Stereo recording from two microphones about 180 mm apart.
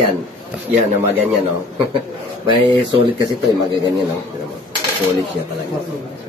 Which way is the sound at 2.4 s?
25° right (ahead or behind).